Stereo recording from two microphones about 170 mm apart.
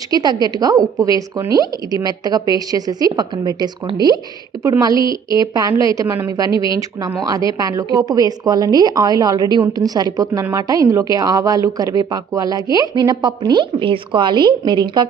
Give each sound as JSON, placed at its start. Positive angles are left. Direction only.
{"t": 0.1, "sound": "a woman's voice", "side_deg": -25}